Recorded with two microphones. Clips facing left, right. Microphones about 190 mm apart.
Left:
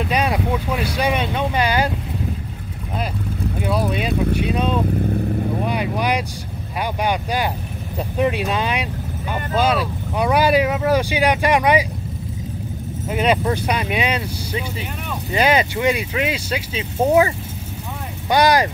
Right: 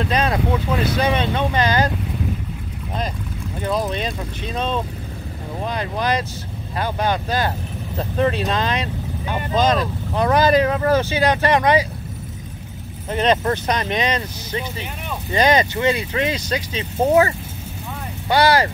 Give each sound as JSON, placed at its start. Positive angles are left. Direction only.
{"t": 0.0, "sound": "speech", "side_deg": 10}
{"t": 3.6, "sound": "speech", "side_deg": 10}
{"t": 13.1, "sound": "speech", "side_deg": 10}
{"t": 18.3, "sound": "speech", "side_deg": 15}